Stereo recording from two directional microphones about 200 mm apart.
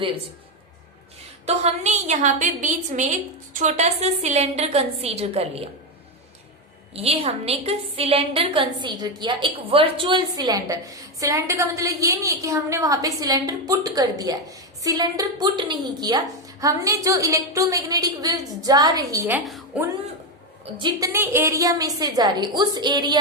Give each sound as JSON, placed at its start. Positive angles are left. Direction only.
{"t": 1.5, "sound": "a woman's voice", "side_deg": -35}
{"t": 6.9, "sound": "a woman's voice", "side_deg": -30}